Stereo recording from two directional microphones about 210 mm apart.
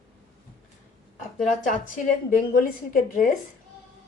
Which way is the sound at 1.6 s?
40° left (ahead or behind).